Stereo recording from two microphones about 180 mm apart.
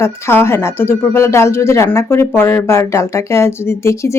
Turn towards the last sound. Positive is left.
turn(degrees=15)  # may be behind; listen again after turning